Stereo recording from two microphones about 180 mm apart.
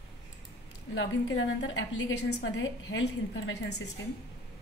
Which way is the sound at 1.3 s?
90° left.